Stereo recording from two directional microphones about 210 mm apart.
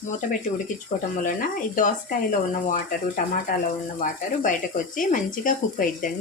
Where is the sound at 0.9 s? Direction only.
35° left (ahead or behind).